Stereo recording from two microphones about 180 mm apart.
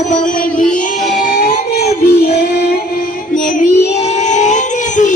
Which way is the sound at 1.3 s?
55° left (ahead or behind).